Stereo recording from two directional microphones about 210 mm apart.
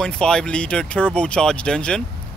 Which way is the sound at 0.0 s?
5° left (ahead or behind).